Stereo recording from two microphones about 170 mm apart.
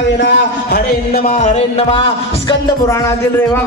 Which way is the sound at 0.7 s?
60° left (ahead or behind).